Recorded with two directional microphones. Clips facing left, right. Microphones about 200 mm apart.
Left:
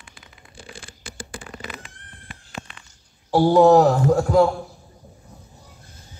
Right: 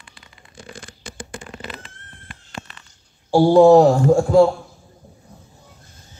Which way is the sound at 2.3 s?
5° left (ahead or behind).